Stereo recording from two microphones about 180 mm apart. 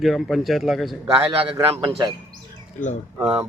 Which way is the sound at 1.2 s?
30° right (ahead or behind).